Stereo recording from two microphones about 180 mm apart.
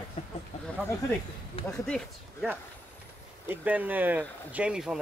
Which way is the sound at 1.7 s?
5° left (ahead or behind).